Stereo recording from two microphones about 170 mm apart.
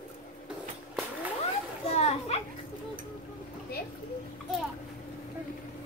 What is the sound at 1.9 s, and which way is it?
Children playing, 40° left (ahead or behind).